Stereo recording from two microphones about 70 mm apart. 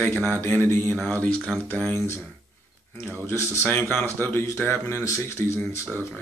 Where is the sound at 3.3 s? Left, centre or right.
Left.